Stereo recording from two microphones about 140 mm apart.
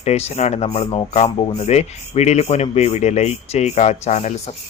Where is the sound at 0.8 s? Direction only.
35° left (ahead or behind).